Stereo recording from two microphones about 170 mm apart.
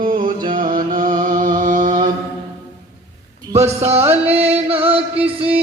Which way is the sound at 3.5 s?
40° right (ahead or behind).